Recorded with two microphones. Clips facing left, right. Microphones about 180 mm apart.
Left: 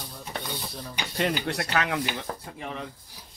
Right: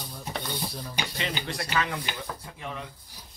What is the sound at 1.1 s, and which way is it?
Speech, 55° left (ahead or behind).